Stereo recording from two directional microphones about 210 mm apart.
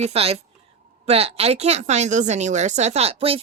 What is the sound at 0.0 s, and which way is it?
A woman's voice, 30° right (ahead or behind).